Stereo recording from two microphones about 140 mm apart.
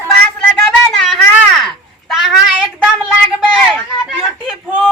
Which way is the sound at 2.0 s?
Centre (ahead or behind).